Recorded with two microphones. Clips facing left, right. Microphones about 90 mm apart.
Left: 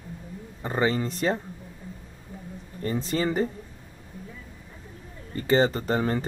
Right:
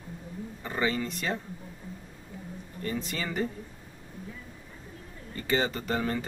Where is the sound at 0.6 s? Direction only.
35° left (ahead or behind).